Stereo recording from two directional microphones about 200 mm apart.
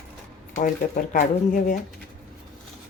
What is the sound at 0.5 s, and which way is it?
A woman's voice, 40° left (ahead or behind).